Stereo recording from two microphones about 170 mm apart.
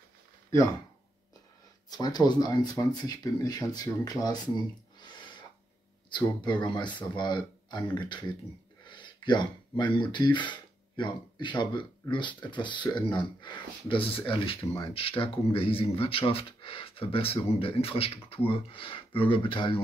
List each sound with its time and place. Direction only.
1.9 s speech: 25° left (ahead or behind)
6.0 s speech: 25° left (ahead or behind)